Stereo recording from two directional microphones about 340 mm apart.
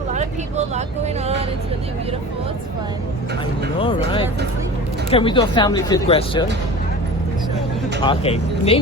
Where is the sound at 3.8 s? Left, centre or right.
Centre.